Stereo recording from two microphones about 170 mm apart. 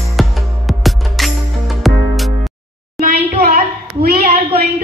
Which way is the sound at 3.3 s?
50° right (ahead or behind).